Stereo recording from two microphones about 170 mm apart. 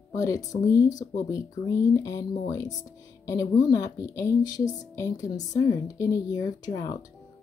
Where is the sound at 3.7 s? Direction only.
20° left (ahead or behind).